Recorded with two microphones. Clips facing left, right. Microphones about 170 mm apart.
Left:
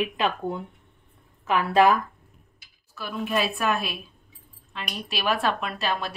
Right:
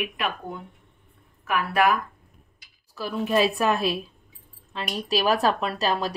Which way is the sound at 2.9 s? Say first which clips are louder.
Right 4 dB; 35° right (ahead or behind).